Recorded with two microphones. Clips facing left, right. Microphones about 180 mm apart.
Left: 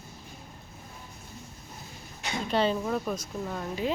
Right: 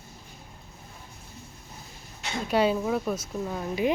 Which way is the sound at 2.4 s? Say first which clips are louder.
Right 3 dB; 10° right (ahead or behind).